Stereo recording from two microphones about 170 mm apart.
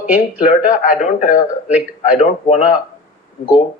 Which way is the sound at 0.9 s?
45° left (ahead or behind).